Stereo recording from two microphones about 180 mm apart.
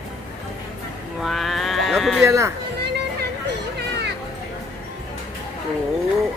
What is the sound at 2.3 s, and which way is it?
Speech, 15° right (ahead or behind).